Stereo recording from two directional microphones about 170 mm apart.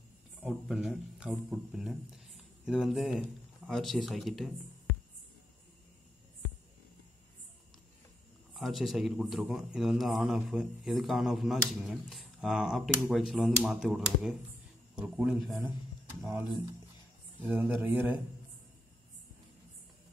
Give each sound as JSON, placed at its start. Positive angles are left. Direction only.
{"t": 0.4, "sound": "speech", "side_deg": -5}
{"t": 8.5, "sound": "a man's voice", "side_deg": 0}
{"t": 17.5, "sound": "speech", "side_deg": -10}